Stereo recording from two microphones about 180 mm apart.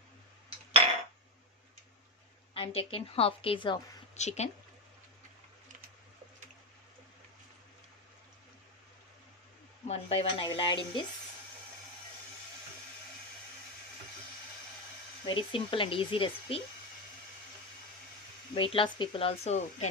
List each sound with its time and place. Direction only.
2.5 s speech: 30° left (ahead or behind)
4.1 s speech: 40° left (ahead or behind)
9.8 s speech: 35° left (ahead or behind)
15.2 s speech: 30° left (ahead or behind)
18.5 s speech: 30° left (ahead or behind)